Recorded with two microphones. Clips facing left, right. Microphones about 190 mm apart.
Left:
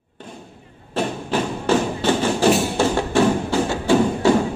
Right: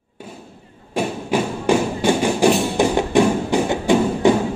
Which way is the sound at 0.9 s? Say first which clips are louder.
Right 2 dB; 10° right (ahead or behind).